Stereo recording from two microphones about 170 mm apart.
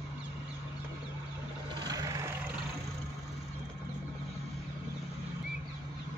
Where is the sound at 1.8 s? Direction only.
20° right (ahead or behind).